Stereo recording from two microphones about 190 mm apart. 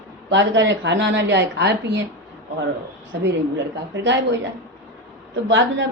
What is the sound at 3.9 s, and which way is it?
Speech, 65° right (ahead or behind).